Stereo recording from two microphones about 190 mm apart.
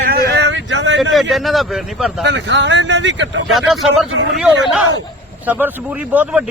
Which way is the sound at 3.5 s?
Centre (ahead or behind).